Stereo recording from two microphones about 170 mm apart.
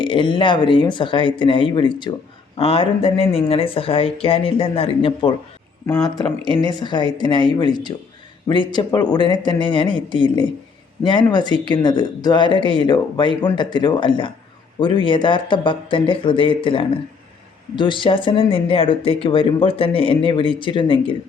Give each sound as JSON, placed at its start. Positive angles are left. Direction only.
{"t": 0.0, "sound": "speech", "side_deg": 30}